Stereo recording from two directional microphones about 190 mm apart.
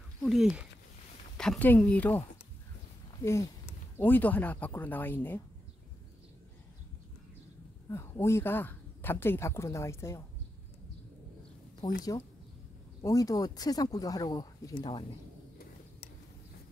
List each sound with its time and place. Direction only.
0.2 s speech: centre (ahead or behind)
7.9 s speech: 15° left (ahead or behind)
13.0 s speech: 15° left (ahead or behind)